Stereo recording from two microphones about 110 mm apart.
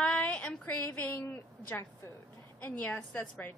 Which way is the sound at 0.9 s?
25° left (ahead or behind).